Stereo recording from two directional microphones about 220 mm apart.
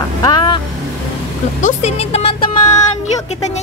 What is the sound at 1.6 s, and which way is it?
Speech, 30° left (ahead or behind).